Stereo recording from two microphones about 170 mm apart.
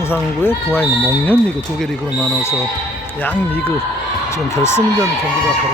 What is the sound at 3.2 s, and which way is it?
Speech, 10° left (ahead or behind).